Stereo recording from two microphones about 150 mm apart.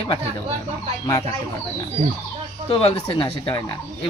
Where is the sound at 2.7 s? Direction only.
40° left (ahead or behind).